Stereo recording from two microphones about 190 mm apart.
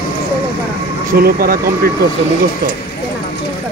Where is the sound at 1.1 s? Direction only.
50° right (ahead or behind).